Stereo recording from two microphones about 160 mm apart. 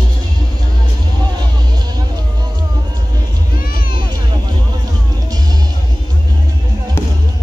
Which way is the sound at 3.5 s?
65° left (ahead or behind).